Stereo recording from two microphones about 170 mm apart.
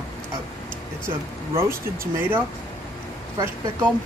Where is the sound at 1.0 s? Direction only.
15° right (ahead or behind).